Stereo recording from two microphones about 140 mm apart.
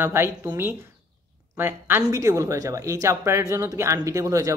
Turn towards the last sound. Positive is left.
turn(degrees=-20)  # may be behind; listen again after turning